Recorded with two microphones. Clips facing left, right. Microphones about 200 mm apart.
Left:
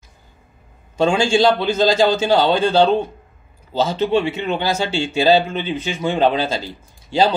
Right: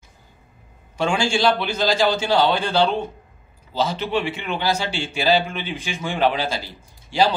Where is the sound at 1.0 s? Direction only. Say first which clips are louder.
Left 5 dB; 25° left (ahead or behind).